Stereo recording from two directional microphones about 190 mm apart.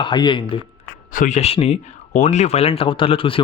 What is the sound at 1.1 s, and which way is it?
A man's voice, 40° left (ahead or behind).